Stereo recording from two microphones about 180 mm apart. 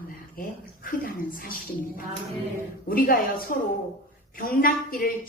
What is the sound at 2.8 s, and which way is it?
A woman's voice, 50° left (ahead or behind).